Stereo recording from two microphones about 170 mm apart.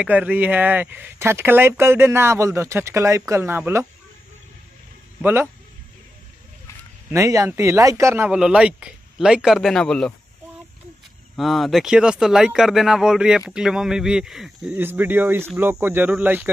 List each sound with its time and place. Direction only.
0.0 s speech: 10° right (ahead or behind)
5.2 s speech: 10° right (ahead or behind)
7.1 s speech: 20° right (ahead or behind); by 10.1 s 5° left (ahead or behind)
11.3 s speech: centre (ahead or behind)